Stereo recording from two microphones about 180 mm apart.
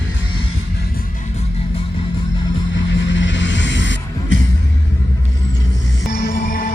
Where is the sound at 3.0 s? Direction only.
90° left.